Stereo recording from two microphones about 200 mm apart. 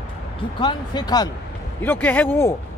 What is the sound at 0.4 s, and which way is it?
Speech, 20° left (ahead or behind).